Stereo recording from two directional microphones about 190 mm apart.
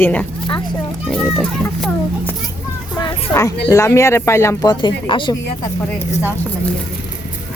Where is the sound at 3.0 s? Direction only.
25° left (ahead or behind).